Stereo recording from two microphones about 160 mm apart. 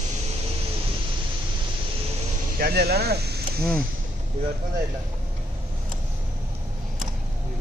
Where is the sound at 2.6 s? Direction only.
80° right.